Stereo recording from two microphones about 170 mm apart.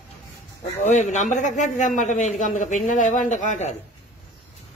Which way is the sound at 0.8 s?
45° left (ahead or behind).